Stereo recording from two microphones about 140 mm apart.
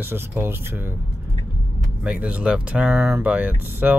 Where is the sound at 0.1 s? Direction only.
15° right (ahead or behind).